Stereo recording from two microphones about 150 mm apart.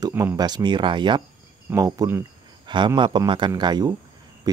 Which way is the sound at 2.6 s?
30° right (ahead or behind).